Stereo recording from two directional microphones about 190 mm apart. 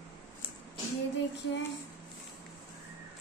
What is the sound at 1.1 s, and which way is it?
Child singing, 70° left (ahead or behind).